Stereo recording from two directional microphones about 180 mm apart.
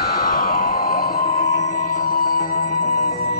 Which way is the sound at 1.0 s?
55° left (ahead or behind).